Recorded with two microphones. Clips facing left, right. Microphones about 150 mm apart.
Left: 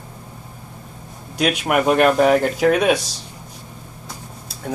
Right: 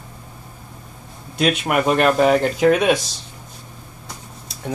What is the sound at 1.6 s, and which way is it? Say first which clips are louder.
Speech: left 3 dB; 5° left (ahead or behind).